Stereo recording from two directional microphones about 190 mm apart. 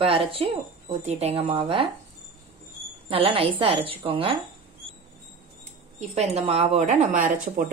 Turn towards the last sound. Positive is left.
turn(degrees=-45)  # may be behind; listen again after turning